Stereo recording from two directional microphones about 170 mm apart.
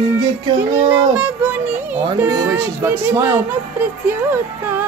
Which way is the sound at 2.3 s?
20° right (ahead or behind).